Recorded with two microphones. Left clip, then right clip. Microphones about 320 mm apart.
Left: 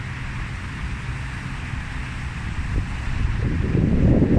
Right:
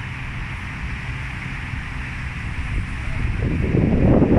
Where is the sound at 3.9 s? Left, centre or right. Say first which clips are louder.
Right 4 dB; right.